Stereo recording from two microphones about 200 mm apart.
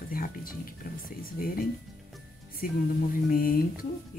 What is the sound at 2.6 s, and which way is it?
Speech, 45° left (ahead or behind).